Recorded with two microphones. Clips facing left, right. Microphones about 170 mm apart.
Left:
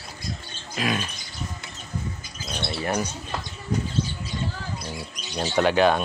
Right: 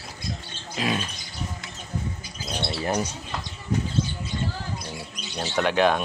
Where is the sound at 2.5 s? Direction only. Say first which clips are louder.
Right 1 dB; 25° right (ahead or behind).